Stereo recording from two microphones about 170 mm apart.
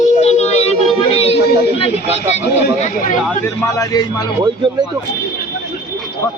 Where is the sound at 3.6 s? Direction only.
20° left (ahead or behind).